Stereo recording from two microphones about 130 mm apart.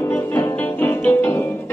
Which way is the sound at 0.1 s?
15° left (ahead or behind).